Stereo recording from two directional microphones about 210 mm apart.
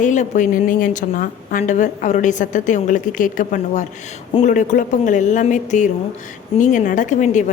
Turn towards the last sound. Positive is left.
turn(degrees=35)  # may be behind; listen again after turning